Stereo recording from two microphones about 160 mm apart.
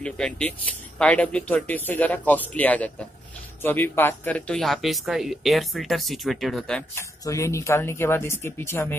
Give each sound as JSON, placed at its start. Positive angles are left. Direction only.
{"t": 0.0, "sound": "speech", "side_deg": 5}
{"t": 7.0, "sound": "speech", "side_deg": 20}